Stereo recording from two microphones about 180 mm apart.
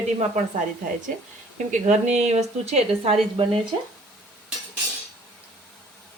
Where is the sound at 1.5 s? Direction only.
40° right (ahead or behind).